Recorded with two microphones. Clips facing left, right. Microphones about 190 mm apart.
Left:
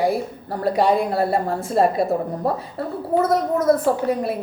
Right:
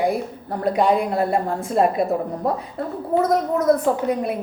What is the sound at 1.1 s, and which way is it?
Speech, 35° left (ahead or behind).